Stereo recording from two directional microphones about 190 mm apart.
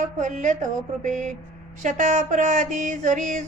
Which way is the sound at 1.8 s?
40° right (ahead or behind).